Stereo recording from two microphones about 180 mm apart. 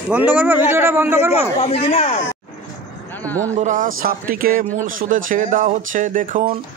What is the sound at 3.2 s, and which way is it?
Speech, 10° left (ahead or behind).